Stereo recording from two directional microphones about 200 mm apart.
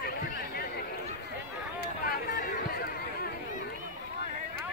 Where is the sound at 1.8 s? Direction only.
50° left (ahead or behind).